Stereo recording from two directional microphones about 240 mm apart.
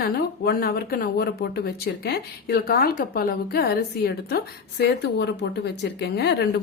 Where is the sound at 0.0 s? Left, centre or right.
Left.